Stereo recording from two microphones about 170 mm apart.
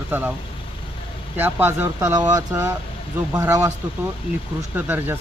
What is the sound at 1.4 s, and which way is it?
Speech, 10° right (ahead or behind).